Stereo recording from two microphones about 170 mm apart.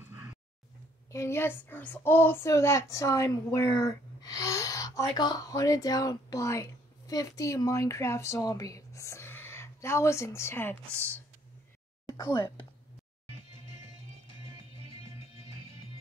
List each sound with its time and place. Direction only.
1.1 s speech: 15° left (ahead or behind)